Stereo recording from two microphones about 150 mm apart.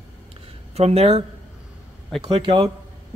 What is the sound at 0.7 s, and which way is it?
Speech, 45° right (ahead or behind).